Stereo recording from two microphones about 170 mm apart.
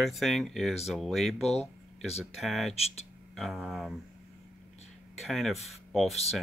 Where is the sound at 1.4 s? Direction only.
40° left (ahead or behind).